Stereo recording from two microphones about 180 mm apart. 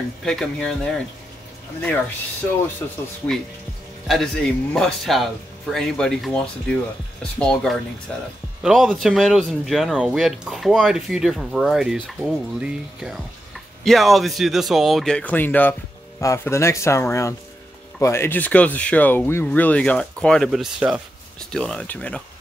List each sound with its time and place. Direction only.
0.2 s speech: 5° left (ahead or behind)
4.1 s speech: 5° left (ahead or behind)